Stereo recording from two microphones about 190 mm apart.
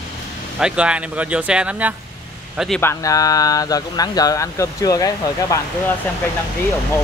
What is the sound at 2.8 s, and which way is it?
Speech, 15° left (ahead or behind).